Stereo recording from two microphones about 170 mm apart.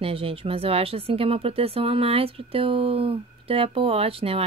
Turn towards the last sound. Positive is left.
turn(degrees=-35)  # may be behind; listen again after turning